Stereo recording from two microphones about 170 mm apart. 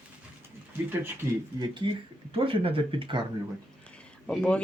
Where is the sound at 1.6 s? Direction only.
30° right (ahead or behind).